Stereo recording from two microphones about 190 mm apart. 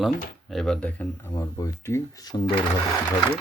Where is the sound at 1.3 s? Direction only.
20° left (ahead or behind).